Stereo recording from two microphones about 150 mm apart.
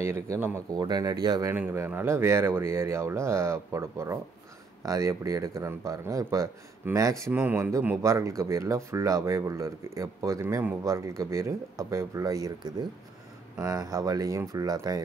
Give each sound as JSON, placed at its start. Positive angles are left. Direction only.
{"t": 0.0, "sound": "speech", "side_deg": -15}
{"t": 0.7, "sound": "speech", "side_deg": -25}
{"t": 1.5, "sound": "speech", "side_deg": -15}